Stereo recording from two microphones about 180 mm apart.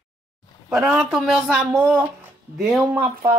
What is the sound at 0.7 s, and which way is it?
Speech, 5° right (ahead or behind).